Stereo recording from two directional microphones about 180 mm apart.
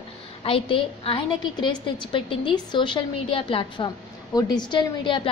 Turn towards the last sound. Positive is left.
turn(degrees=25)  # may be behind; listen again after turning